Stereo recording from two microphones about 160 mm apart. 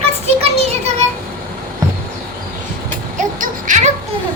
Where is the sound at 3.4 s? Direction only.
50° right (ahead or behind).